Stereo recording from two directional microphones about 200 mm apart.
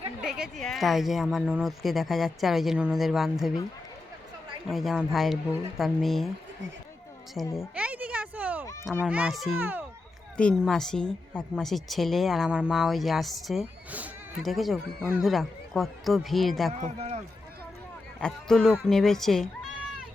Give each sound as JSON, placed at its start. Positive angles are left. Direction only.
{"t": 0.2, "sound": "speech", "side_deg": -5}
{"t": 4.7, "sound": "speech", "side_deg": 0}
{"t": 7.4, "sound": "speech", "side_deg": 0}
{"t": 7.8, "sound": "a sound", "side_deg": -5}
{"t": 8.8, "sound": "speech", "side_deg": 0}
{"t": 10.3, "sound": "speech", "side_deg": 5}
{"t": 16.8, "sound": "a man's voice", "side_deg": -35}
{"t": 18.2, "sound": "speech", "side_deg": 5}